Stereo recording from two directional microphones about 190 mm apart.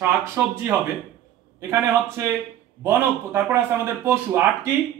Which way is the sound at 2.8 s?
15° right (ahead or behind).